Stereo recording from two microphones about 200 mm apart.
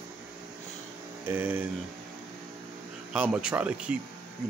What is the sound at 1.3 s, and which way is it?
Speech, 10° right (ahead or behind).